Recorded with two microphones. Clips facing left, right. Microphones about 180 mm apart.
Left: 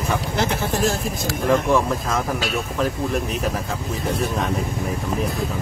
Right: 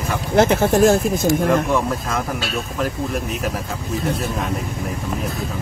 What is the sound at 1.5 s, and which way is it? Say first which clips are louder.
Speech: even; centre (ahead or behind).